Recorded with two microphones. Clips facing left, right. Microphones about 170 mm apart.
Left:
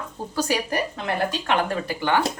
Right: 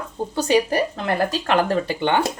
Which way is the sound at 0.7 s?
35° right (ahead or behind).